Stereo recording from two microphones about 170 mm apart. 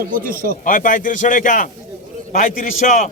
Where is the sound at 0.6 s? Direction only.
50° left (ahead or behind).